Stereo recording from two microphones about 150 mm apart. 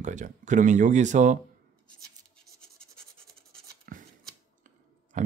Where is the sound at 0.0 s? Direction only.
55° right (ahead or behind).